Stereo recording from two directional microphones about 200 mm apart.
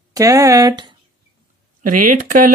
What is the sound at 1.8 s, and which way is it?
Speech, 45° right (ahead or behind).